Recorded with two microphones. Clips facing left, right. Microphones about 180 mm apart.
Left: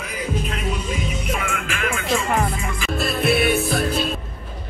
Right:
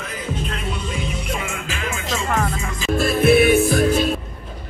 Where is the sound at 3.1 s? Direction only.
45° right (ahead or behind).